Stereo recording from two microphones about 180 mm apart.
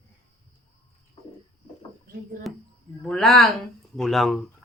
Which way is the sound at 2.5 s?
Centre (ahead or behind).